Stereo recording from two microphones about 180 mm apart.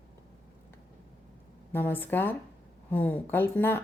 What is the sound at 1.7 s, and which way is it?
Speech, 10° left (ahead or behind).